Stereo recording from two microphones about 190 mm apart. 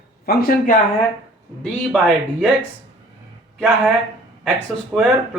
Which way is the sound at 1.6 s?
Centre (ahead or behind).